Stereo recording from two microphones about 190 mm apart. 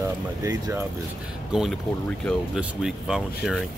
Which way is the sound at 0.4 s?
15° right (ahead or behind).